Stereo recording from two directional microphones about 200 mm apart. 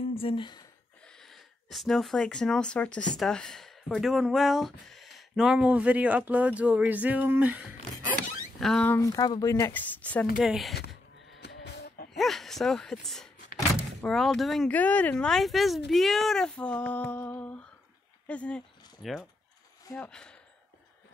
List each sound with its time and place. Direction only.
0.1 s speech: 25° left (ahead or behind)
1.0 s speech: centre (ahead or behind)
8.5 s speech: 5° left (ahead or behind)
11.3 s a sound: 55° left (ahead or behind)
12.2 s speech: centre (ahead or behind)